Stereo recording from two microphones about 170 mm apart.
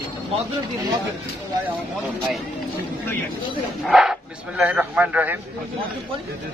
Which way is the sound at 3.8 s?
5° right (ahead or behind).